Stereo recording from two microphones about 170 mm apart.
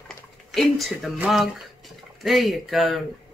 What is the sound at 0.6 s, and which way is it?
Speech, centre (ahead or behind).